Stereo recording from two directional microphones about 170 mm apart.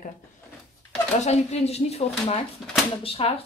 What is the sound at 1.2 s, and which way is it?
Speech, 40° left (ahead or behind).